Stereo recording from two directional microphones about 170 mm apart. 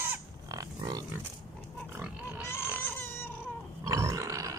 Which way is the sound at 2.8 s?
15° left (ahead or behind).